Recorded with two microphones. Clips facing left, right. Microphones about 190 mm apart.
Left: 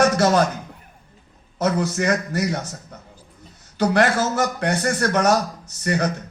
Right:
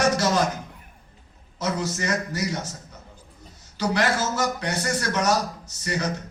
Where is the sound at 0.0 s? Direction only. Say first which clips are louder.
Left 5 dB; 60° left (ahead or behind).